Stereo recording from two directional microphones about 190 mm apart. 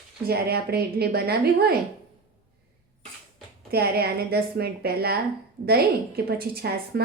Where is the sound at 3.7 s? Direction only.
55° right (ahead or behind).